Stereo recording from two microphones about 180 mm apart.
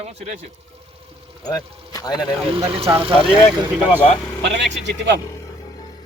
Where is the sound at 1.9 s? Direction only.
20° left (ahead or behind).